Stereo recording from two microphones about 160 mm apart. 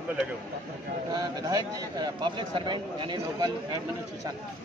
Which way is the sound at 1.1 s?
25° right (ahead or behind).